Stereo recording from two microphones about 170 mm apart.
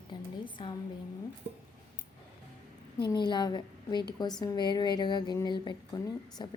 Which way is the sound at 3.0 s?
25° left (ahead or behind).